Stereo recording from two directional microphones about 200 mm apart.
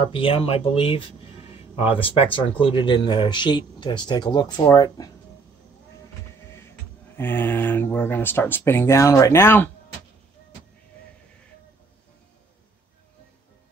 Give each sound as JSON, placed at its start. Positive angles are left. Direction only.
{"t": 0.0, "sound": "speech", "side_deg": 25}
{"t": 7.2, "sound": "speech", "side_deg": 10}